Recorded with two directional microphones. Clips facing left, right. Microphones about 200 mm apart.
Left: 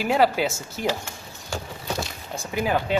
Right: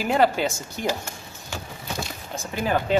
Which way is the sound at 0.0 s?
5° left (ahead or behind).